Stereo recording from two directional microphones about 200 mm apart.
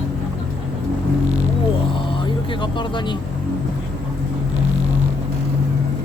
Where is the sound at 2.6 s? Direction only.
25° left (ahead or behind).